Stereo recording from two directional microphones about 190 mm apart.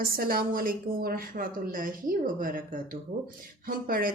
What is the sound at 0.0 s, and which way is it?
Speech, 50° right (ahead or behind).